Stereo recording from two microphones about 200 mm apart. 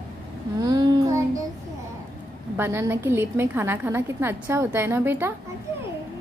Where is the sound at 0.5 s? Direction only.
20° right (ahead or behind).